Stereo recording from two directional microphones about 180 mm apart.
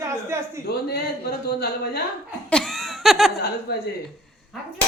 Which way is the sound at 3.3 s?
60° left (ahead or behind).